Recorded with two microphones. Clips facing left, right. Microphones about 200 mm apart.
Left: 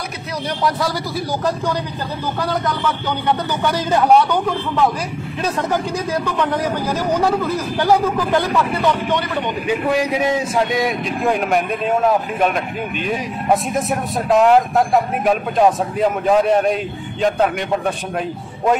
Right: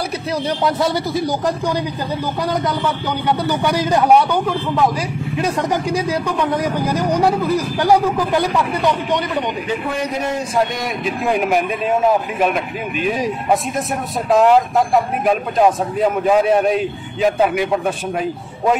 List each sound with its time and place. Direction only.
0.7 s a man's voice: 25° right (ahead or behind)
3.3 s a man's voice: 10° right (ahead or behind)
7.0 s a man's voice: 15° right (ahead or behind)
10.6 s speech: centre (ahead or behind)
14.3 s speech: centre (ahead or behind)